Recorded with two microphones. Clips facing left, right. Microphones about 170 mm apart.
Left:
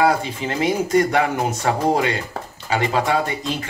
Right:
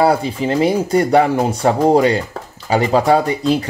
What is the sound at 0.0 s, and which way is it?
Speech, 35° right (ahead or behind).